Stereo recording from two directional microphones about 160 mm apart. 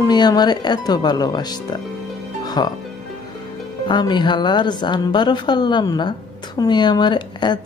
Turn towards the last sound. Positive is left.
turn(degrees=30)  # may be behind; listen again after turning